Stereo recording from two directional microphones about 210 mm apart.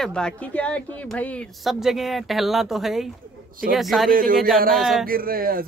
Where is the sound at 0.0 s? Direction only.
5° left (ahead or behind).